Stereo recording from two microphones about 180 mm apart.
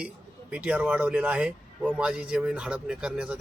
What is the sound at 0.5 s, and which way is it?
Speech, 5° right (ahead or behind).